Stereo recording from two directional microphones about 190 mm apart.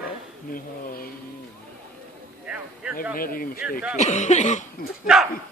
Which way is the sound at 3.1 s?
50° left (ahead or behind).